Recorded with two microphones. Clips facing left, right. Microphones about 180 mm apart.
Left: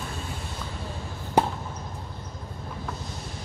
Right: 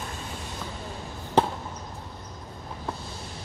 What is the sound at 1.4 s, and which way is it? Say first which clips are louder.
Chop: even; 10° left (ahead or behind).